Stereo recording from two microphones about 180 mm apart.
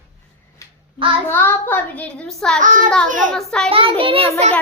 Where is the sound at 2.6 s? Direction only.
45° right (ahead or behind).